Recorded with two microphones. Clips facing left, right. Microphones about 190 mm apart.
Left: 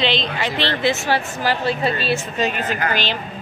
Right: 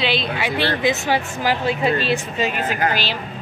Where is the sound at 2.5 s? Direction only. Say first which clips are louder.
Even; 45° left (ahead or behind).